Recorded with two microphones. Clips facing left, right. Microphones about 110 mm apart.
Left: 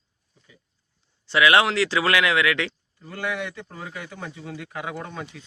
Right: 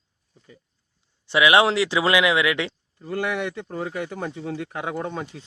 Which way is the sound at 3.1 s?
30° right (ahead or behind).